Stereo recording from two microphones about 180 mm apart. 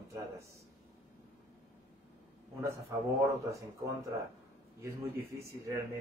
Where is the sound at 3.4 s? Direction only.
15° right (ahead or behind).